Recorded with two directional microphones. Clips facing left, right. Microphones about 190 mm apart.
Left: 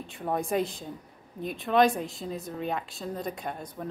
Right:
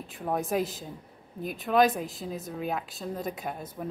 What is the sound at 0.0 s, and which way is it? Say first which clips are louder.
Speech: even; centre (ahead or behind).